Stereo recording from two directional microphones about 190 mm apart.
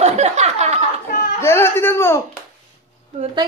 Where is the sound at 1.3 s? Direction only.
15° left (ahead or behind).